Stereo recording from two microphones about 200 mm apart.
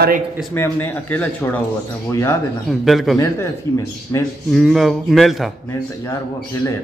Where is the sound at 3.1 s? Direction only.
15° left (ahead or behind).